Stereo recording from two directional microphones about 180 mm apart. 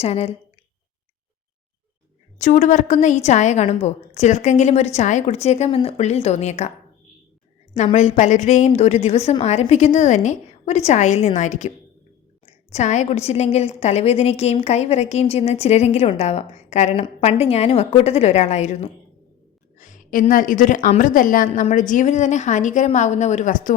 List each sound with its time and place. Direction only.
0.0 s a woman's voice: 35° left (ahead or behind)
2.4 s a woman's voice: 40° left (ahead or behind)
7.9 s a woman's voice: 40° left (ahead or behind)
12.7 s a woman's voice: 40° left (ahead or behind)